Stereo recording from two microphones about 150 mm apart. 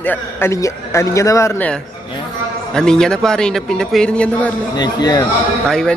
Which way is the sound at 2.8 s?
5° left (ahead or behind).